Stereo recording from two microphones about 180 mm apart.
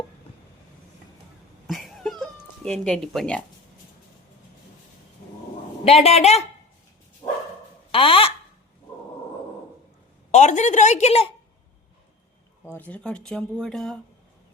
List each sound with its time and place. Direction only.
1.6 s a sound: centre (ahead or behind)
5.8 s a woman's voice: 35° left (ahead or behind)
7.2 s bow-wow: 25° left (ahead or behind)
7.9 s a woman's voice: 30° left (ahead or behind)
10.3 s a woman's voice: 40° left (ahead or behind)
12.7 s speech: 10° left (ahead or behind)